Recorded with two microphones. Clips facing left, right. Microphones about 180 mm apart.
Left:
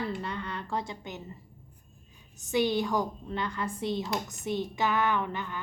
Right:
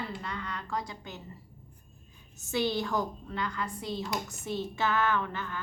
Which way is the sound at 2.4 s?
15° left (ahead or behind).